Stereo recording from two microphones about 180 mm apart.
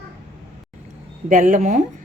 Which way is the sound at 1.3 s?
45° right (ahead or behind).